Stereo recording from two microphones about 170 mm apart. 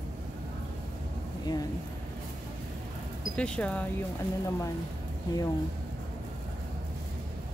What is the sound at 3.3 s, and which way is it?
Speech, 5° left (ahead or behind).